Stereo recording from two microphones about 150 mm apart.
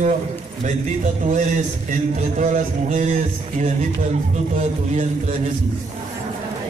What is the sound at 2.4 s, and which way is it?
A man's voice, 55° right (ahead or behind).